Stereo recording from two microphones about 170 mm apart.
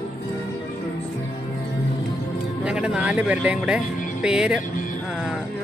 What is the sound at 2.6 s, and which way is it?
Speech, 5° right (ahead or behind).